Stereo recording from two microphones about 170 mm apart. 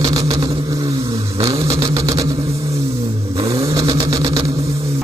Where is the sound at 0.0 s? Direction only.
20° right (ahead or behind).